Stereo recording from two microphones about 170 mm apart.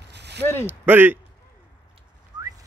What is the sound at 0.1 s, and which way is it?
Zipper, 85° right.